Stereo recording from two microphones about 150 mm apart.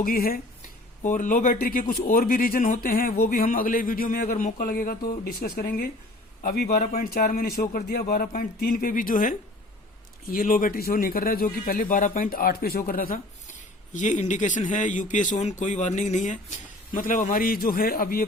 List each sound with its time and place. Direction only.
0.0 s a man's voice: 80° left
1.0 s speech: 60° left (ahead or behind); by 3.4 s 75° left (ahead or behind)
3.4 s a man's voice: 60° left (ahead or behind)
10.3 s speech: 65° left (ahead or behind)
13.9 s speech: 55° left (ahead or behind); by 18.3 s 70° left (ahead or behind)